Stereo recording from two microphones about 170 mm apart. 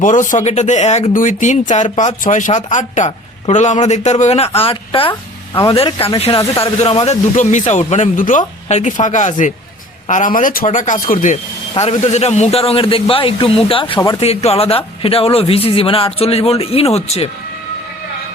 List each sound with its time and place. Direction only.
0.0 s speech: 50° left (ahead or behind)
11.7 s speech: 40° left (ahead or behind)
14.2 s speech: 35° left (ahead or behind)